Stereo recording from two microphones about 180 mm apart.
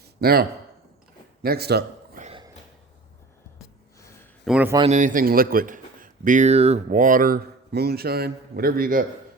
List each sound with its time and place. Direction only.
0.0 s a sound: 60° right (ahead or behind)
1.4 s a man's voice: 60° right (ahead or behind)
4.4 s speech: 5° right (ahead or behind)
4.9 s speech: 45° right (ahead or behind)
6.8 s a man's voice: 50° right (ahead or behind)